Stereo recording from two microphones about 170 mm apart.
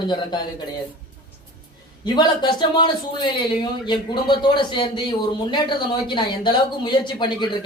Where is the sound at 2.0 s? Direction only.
25° left (ahead or behind).